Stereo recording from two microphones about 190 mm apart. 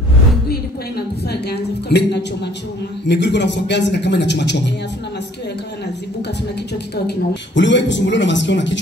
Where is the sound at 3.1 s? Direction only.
65° left (ahead or behind).